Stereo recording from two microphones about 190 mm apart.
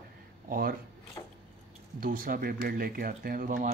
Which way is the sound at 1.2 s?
20° left (ahead or behind).